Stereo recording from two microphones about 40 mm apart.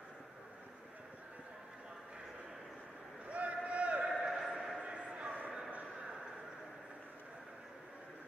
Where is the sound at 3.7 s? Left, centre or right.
Right.